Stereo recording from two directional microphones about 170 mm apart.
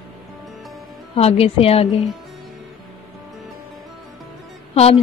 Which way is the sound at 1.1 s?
35° left (ahead or behind).